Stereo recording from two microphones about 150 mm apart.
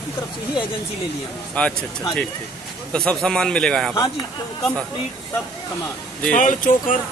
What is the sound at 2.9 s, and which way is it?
Speech, 5° left (ahead or behind).